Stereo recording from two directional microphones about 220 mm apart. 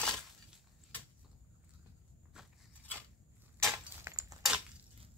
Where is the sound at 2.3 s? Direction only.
5° left (ahead or behind).